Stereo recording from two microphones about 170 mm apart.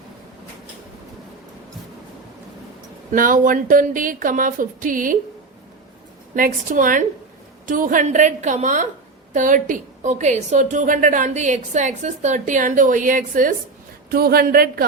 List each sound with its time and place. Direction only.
3.1 s a woman's voice: 50° right (ahead or behind)
6.3 s a woman's voice: 50° right (ahead or behind)
14.1 s a man's voice: 65° right (ahead or behind)